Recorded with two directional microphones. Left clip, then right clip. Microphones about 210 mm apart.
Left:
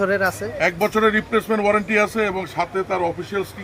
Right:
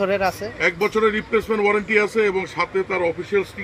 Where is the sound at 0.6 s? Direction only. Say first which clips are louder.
Left 1 dB; 40° left (ahead or behind).